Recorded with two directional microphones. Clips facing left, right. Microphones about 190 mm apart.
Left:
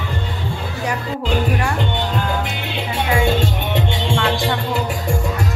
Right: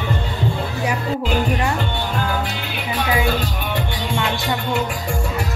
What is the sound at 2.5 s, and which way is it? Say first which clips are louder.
Music: left 1 dB; 25° left (ahead or behind).